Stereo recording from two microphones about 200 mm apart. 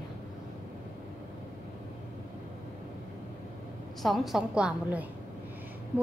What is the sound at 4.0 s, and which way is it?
A woman's voice, centre (ahead or behind).